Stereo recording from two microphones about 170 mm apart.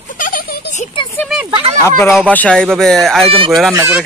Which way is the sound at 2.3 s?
5° left (ahead or behind).